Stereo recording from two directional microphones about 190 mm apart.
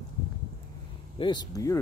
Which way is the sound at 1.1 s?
25° left (ahead or behind).